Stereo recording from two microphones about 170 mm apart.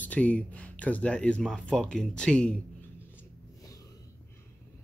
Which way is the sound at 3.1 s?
20° left (ahead or behind).